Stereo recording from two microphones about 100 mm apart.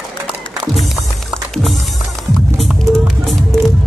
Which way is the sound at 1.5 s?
Centre (ahead or behind).